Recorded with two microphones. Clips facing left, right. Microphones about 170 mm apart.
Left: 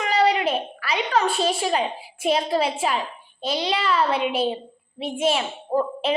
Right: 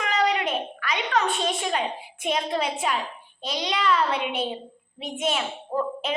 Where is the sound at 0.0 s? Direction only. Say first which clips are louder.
Left 4 dB; 30° left (ahead or behind).